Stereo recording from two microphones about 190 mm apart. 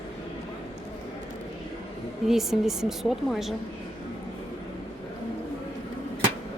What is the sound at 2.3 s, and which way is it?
A woman's voice, centre (ahead or behind).